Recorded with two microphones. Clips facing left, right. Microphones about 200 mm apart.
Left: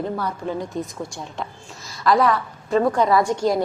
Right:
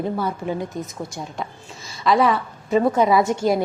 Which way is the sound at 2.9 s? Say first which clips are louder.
Right 3 dB; 20° right (ahead or behind).